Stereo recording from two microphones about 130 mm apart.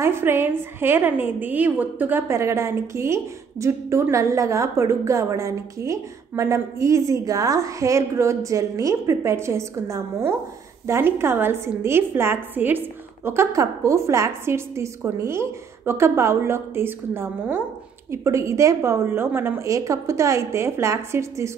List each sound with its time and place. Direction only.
0.0 s a woman's voice: 20° right (ahead or behind)